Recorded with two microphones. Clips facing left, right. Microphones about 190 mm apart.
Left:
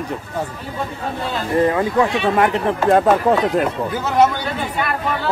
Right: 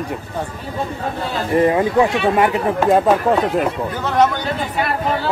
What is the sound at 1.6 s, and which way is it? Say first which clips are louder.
Speech: right 2 dB; 20° right (ahead or behind).